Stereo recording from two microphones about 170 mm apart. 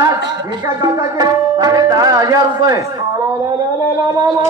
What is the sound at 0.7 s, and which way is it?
A man's voice, 20° right (ahead or behind).